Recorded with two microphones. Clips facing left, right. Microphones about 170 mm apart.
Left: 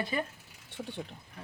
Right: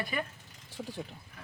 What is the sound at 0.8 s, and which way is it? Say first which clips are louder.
Speech: even; centre (ahead or behind).